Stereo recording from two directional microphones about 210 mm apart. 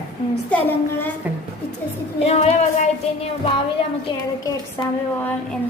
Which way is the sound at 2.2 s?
30° left (ahead or behind).